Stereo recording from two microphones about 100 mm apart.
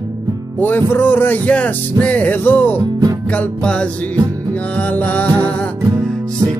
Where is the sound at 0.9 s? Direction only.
20° left (ahead or behind).